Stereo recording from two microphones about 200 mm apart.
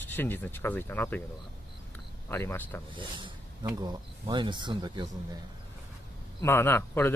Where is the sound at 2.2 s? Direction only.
10° left (ahead or behind).